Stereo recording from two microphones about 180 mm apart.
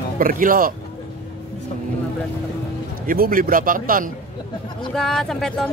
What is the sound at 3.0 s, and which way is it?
A man's voice, 50° right (ahead or behind).